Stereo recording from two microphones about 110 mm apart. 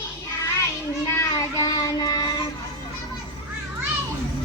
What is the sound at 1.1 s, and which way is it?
Child singing, 30° left (ahead or behind).